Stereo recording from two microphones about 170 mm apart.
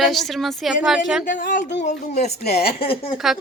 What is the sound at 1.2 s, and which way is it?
Speech, 50° left (ahead or behind).